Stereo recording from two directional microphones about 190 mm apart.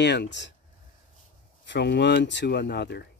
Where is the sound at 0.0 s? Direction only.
65° left (ahead or behind).